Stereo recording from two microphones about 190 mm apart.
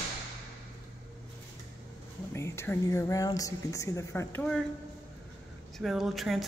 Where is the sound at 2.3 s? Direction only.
15° left (ahead or behind).